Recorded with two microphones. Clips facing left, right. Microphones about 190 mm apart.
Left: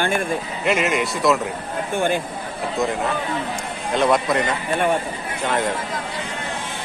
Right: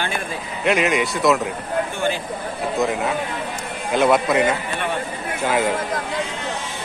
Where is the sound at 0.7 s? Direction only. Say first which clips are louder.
Right 2 dB; centre (ahead or behind).